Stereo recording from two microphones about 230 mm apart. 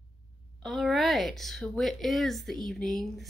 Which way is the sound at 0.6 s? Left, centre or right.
Centre.